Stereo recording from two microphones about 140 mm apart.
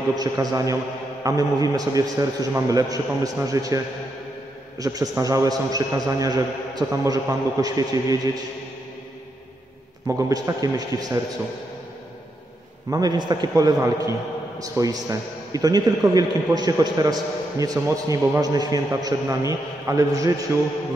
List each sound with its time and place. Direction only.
0.2 s a man's voice: 25° right (ahead or behind)
10.0 s a man's voice: 20° right (ahead or behind)
12.9 s a man's voice: 30° right (ahead or behind)